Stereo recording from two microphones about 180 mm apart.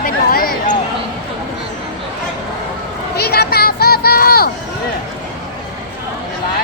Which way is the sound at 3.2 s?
60° left (ahead or behind).